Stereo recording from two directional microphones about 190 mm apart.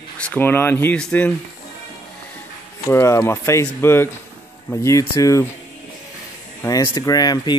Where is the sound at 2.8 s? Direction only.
15° left (ahead or behind).